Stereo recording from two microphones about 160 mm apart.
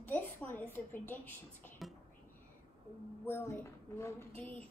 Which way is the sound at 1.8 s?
Centre (ahead or behind).